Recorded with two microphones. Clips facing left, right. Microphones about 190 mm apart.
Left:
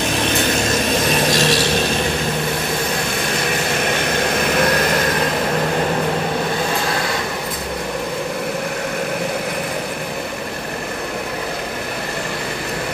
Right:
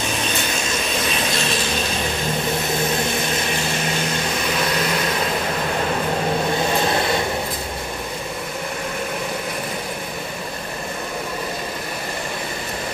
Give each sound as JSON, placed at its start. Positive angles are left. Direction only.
{"t": 1.3, "sound": "mechanisms", "side_deg": 80}
{"t": 4.0, "sound": "vehicle", "side_deg": 60}